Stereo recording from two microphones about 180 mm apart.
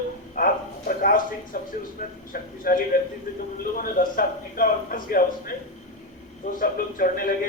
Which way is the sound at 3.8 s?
50° left (ahead or behind).